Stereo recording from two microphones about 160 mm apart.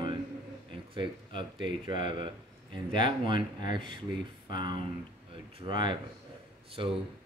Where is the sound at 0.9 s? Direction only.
30° right (ahead or behind).